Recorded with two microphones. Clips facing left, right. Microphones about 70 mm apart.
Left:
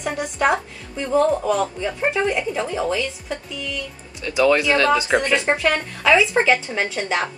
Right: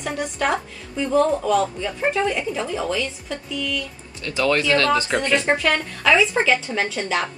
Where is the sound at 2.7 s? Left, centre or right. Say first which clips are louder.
Left 2 dB; centre.